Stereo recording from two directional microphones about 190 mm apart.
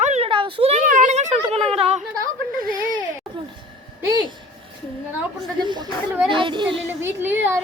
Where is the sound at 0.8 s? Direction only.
40° right (ahead or behind).